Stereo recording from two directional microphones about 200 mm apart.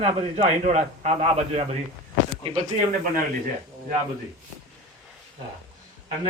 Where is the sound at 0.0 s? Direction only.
30° right (ahead or behind).